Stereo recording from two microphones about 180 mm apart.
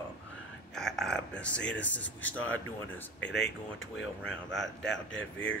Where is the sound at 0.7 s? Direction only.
Centre (ahead or behind).